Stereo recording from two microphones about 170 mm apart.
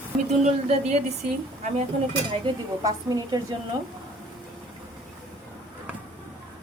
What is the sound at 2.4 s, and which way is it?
A woman's voice, 25° right (ahead or behind).